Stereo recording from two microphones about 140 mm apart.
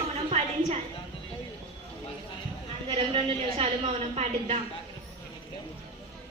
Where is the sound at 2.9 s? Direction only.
40° right (ahead or behind).